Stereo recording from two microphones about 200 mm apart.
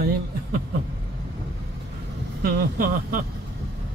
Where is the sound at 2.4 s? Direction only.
50° right (ahead or behind).